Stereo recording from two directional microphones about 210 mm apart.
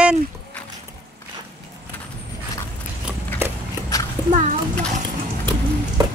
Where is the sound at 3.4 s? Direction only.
10° right (ahead or behind).